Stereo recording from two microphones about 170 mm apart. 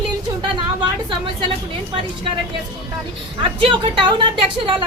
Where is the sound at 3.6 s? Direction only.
30° right (ahead or behind).